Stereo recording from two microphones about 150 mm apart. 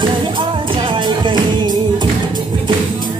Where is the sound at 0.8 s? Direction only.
35° right (ahead or behind).